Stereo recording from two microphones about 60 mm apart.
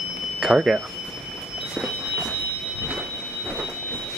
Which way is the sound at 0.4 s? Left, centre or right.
Centre.